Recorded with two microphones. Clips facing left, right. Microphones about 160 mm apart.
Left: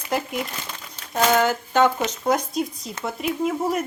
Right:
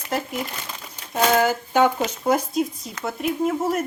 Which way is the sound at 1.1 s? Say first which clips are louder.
Even; 10° right (ahead or behind).